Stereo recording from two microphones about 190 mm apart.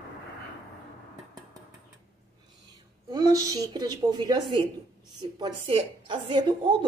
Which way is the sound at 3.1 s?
20° right (ahead or behind).